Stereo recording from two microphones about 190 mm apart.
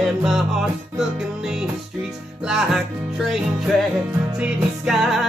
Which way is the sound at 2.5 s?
Centre (ahead or behind).